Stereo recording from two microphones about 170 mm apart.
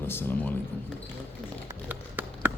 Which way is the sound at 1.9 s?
10° right (ahead or behind).